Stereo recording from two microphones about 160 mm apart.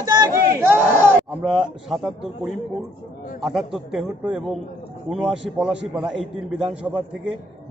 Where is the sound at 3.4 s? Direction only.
Centre (ahead or behind).